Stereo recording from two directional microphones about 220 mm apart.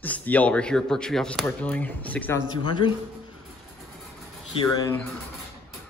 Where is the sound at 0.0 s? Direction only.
5° left (ahead or behind).